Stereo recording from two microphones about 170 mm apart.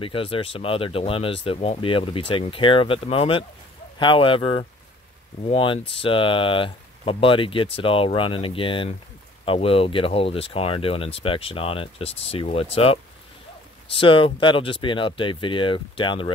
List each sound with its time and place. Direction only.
0.0 s speech: 30° left (ahead or behind)